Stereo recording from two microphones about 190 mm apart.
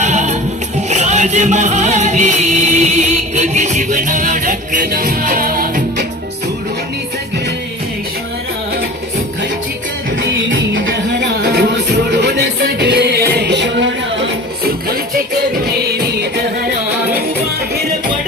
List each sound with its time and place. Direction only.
0.0 s music: 40° right (ahead or behind)
10.5 s music: 80° right
16.1 s music: 60° right (ahead or behind)